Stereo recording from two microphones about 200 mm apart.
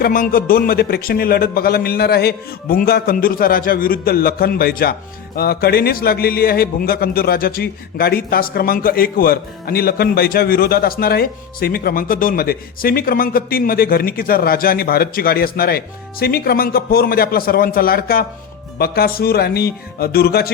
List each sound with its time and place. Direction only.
0.0 s a man's voice: 45° left (ahead or behind)